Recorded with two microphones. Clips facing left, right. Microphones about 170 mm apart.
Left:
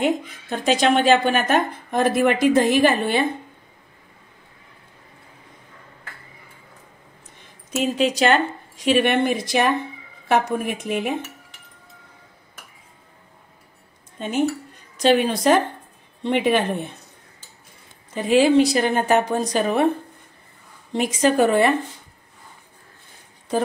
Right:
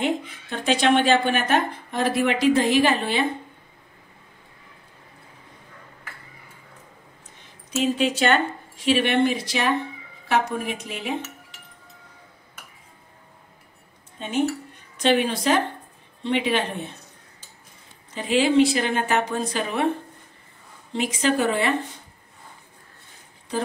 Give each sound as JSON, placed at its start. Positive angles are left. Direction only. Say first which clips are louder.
{"t": 0.0, "sound": "speech", "louder": "left 3 dB", "side_deg": 45}
{"t": 7.7, "sound": "speech", "louder": "left 1 dB", "side_deg": 40}
{"t": 14.1, "sound": "speech", "louder": "left 2 dB", "side_deg": 45}
{"t": 18.1, "sound": "speech", "louder": "left 4 dB", "side_deg": 45}
{"t": 20.9, "sound": "speech", "louder": "left 4 dB", "side_deg": 45}